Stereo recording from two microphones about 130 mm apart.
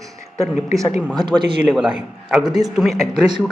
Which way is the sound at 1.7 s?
5° right (ahead or behind).